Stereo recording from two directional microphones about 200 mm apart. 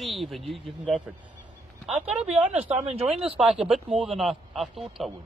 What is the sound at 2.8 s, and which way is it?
Speech, 30° right (ahead or behind).